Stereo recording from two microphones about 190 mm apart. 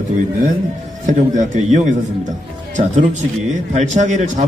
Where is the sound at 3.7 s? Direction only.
40° right (ahead or behind).